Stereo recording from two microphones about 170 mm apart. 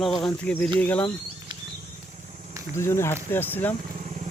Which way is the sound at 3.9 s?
45° right (ahead or behind).